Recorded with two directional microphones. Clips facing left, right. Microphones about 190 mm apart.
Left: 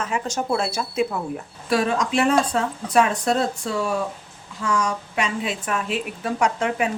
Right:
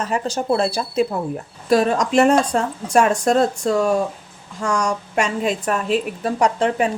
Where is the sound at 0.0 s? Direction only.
35° right (ahead or behind).